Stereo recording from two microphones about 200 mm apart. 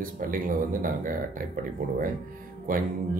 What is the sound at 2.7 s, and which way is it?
Speech, 45° right (ahead or behind).